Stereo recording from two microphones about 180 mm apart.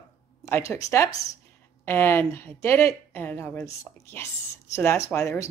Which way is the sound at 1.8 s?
10° left (ahead or behind).